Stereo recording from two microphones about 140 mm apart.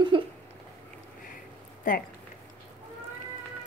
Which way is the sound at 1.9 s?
80° left.